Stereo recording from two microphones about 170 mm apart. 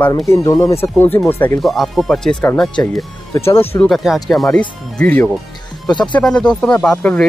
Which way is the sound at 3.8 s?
Centre (ahead or behind).